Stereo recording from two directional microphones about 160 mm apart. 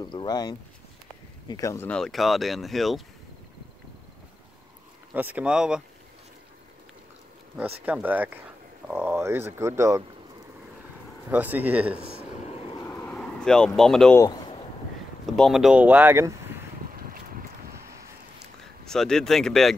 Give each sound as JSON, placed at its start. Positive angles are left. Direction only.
{"t": 0.0, "sound": "speech", "side_deg": 25}
{"t": 1.9, "sound": "speech", "side_deg": 5}
{"t": 5.1, "sound": "speech", "side_deg": -10}
{"t": 7.5, "sound": "speech", "side_deg": -10}
{"t": 11.2, "sound": "speech", "side_deg": -10}
{"t": 12.8, "sound": "vehicle", "side_deg": 10}
{"t": 13.7, "sound": "speech", "side_deg": 0}
{"t": 14.1, "sound": "speech", "side_deg": 25}
{"t": 15.2, "sound": "speech", "side_deg": 0}
{"t": 16.9, "sound": "boat", "side_deg": -65}
{"t": 18.9, "sound": "speech", "side_deg": 5}